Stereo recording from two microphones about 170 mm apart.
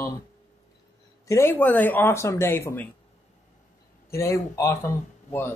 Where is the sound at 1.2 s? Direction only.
15° left (ahead or behind).